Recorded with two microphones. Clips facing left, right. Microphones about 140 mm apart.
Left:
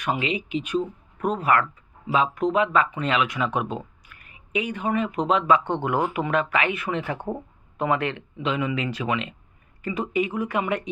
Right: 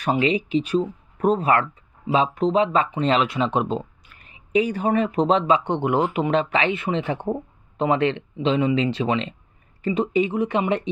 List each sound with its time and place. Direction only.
0.0 s speech: 35° right (ahead or behind)
5.6 s speech: 20° right (ahead or behind)